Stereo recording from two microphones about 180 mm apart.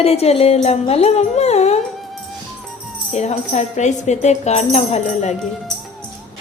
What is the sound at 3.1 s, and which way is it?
Speech, 40° left (ahead or behind).